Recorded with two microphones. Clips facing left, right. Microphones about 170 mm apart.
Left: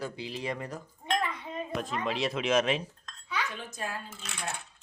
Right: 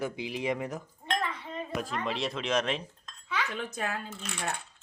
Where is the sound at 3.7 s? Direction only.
65° right (ahead or behind).